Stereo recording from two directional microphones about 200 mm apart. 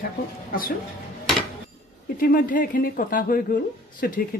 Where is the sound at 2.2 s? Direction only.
45° left (ahead or behind).